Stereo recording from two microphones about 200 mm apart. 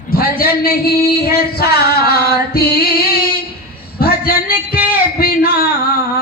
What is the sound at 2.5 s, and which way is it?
Singing, 50° left (ahead or behind).